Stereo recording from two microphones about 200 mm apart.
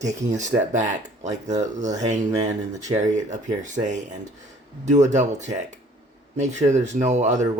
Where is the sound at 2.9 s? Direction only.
35° right (ahead or behind).